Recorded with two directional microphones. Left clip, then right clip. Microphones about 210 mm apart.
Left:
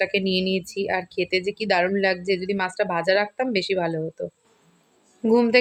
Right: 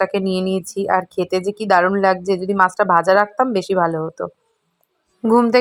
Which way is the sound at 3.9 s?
Centre (ahead or behind).